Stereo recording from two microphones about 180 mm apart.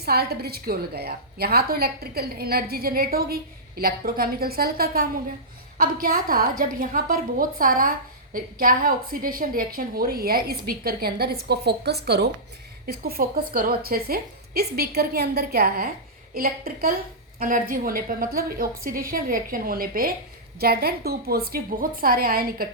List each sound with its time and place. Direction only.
0.0 s a woman's voice: 60° right (ahead or behind)